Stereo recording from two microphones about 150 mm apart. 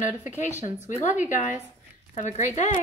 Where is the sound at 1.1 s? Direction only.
55° left (ahead or behind).